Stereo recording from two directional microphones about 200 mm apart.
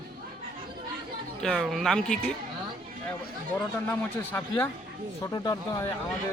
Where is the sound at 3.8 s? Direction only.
10° left (ahead or behind).